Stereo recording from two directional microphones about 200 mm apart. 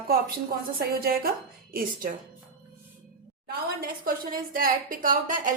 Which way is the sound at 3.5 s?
50° right (ahead or behind).